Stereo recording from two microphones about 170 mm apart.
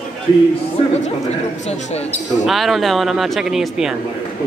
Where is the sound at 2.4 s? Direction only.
Centre (ahead or behind).